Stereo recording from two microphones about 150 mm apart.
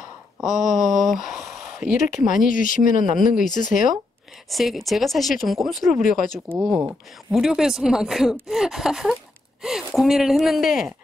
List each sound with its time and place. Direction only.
0.4 s speech: centre (ahead or behind)
1.8 s speech: 55° left (ahead or behind)
4.5 s speech: centre (ahead or behind)
6.7 s speech: 10° right (ahead or behind)